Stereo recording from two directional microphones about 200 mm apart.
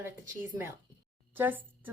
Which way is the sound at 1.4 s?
10° right (ahead or behind).